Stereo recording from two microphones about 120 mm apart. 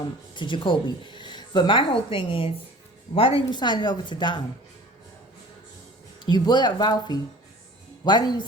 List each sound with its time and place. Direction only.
0.3 s speech: 45° left (ahead or behind)
6.1 s speech: 35° left (ahead or behind)